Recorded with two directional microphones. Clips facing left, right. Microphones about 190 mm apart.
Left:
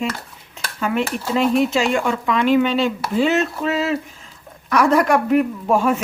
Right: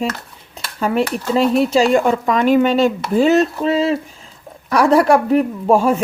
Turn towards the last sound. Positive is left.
turn(degrees=-30)  # may be behind; listen again after turning